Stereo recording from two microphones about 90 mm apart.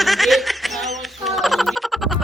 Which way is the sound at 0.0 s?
Centre (ahead or behind).